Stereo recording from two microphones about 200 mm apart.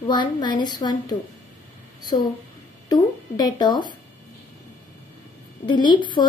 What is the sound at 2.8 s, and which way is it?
Speech, 20° left (ahead or behind).